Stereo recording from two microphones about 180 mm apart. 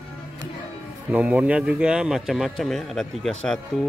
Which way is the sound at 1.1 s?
5° right (ahead or behind).